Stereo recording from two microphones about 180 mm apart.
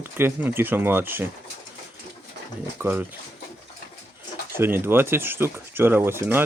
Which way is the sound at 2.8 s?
10° right (ahead or behind).